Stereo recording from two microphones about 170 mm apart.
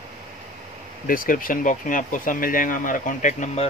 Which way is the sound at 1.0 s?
55° left (ahead or behind).